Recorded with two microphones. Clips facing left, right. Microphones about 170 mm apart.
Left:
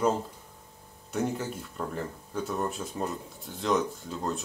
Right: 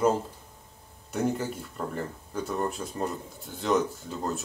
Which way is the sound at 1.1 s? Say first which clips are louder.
Right 2 dB; centre (ahead or behind).